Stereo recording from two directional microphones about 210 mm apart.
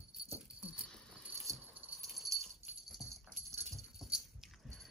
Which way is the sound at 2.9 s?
Centre (ahead or behind).